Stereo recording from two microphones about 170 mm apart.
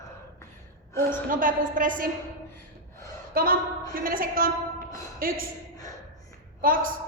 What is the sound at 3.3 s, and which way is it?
A woman's voice, 60° right (ahead or behind).